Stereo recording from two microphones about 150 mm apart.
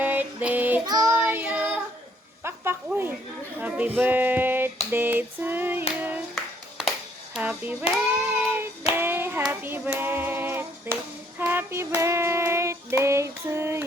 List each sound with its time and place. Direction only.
0.0 s child singing: 10° right (ahead or behind)
0.9 s child singing: 20° right (ahead or behind)
2.4 s a sound: 15° right (ahead or behind)
3.6 s female singing: 10° right (ahead or behind)
5.9 s clapping: 10° right (ahead or behind)
6.3 s a sound: centre (ahead or behind)
7.3 s child singing: 10° right (ahead or behind)
9.9 s music: 15° right (ahead or behind)
10.9 s clapping: 10° left (ahead or behind)
11.3 s child singing: 15° right (ahead or behind)